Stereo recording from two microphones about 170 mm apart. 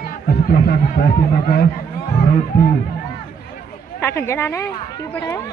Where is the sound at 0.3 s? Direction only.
60° left (ahead or behind).